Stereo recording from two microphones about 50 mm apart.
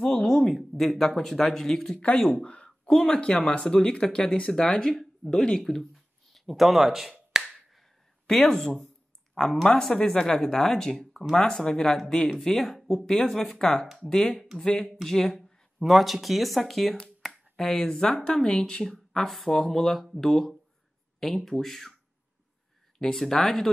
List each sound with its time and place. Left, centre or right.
0.0 s speech: centre
0.5 s speech: centre
2.0 s speech: left
2.4 s a sound: left
3.1 s speech: left
6.3 s finger snapping: centre
8.3 s speech: centre
15.8 s speech: centre
17.2 s finger snapping: centre
17.6 s speech: centre
18.1 s speech: left
18.9 s speech: centre
22.9 s speech: centre